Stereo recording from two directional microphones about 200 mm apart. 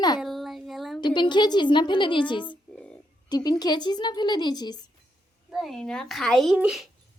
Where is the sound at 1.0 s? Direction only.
20° left (ahead or behind).